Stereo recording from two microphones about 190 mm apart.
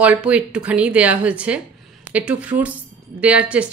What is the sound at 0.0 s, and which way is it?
Speech, 5° right (ahead or behind).